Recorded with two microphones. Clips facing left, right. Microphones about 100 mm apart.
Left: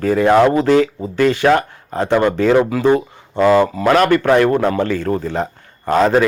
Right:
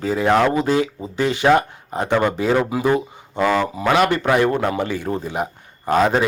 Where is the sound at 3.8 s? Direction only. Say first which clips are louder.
Even; 5° right (ahead or behind).